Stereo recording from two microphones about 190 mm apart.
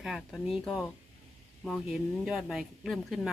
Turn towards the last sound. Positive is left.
turn(degrees=0)  # may be behind; listen again after turning